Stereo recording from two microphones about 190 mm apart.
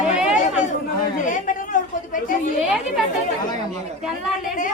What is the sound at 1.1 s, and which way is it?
Chatter, 45° left (ahead or behind).